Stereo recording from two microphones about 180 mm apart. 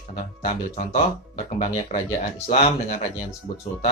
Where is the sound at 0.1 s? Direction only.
40° left (ahead or behind).